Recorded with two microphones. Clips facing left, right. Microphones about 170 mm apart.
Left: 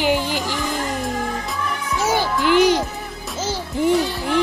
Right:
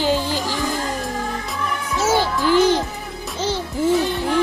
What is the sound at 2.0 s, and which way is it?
Music, 15° left (ahead or behind).